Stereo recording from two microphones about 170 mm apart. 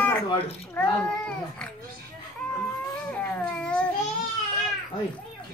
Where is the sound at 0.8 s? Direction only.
5° left (ahead or behind).